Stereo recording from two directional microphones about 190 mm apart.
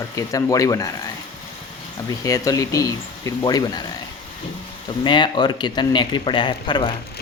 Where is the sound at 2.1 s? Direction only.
20° left (ahead or behind).